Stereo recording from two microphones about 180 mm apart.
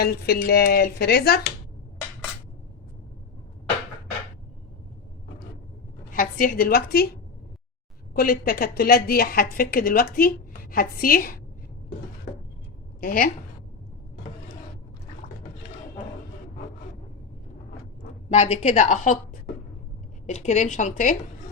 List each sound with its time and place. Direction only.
0.0 s a woman's voice: 60° left (ahead or behind)
6.1 s a woman's voice: 50° left (ahead or behind)
8.1 s a woman's voice: 55° left (ahead or behind)
13.0 s a woman's voice: 50° left (ahead or behind)
18.3 s a woman's voice: 40° left (ahead or behind)